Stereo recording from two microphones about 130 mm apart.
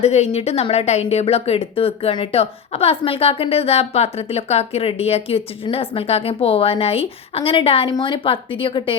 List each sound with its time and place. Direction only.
0.0 s a woman's voice: 55° left (ahead or behind)